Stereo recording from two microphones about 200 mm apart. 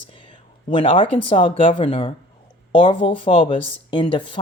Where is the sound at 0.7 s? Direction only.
25° left (ahead or behind).